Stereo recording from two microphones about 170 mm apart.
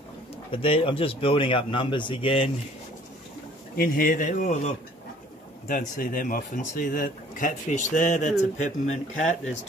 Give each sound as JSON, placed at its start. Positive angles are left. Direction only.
{"t": 0.5, "sound": "speech", "side_deg": 35}
{"t": 3.7, "sound": "speech", "side_deg": 60}
{"t": 5.7, "sound": "speech", "side_deg": 55}